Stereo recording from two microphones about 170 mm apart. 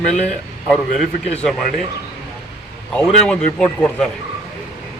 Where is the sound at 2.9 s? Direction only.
5° left (ahead or behind).